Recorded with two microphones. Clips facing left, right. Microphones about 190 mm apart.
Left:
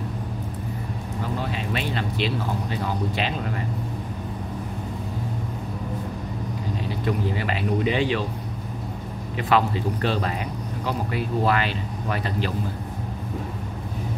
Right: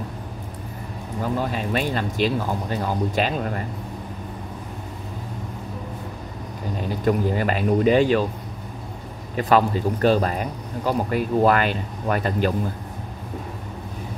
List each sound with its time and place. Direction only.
1.4 s speech: 45° right (ahead or behind)
7.1 s speech: 45° right (ahead or behind)
9.4 s speech: 40° right (ahead or behind)